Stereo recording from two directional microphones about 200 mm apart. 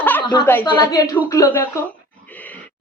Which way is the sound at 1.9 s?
5° left (ahead or behind).